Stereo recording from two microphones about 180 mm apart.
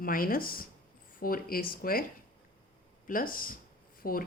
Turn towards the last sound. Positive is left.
turn(degrees=55)  # may be behind; listen again after turning